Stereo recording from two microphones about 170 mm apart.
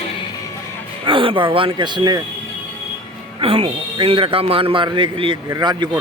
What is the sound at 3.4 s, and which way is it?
A man's voice, 30° right (ahead or behind).